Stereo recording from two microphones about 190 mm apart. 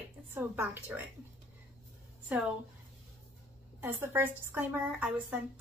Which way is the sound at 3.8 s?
10° right (ahead or behind).